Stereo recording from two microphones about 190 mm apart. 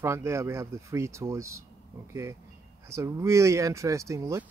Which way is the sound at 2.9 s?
15° right (ahead or behind).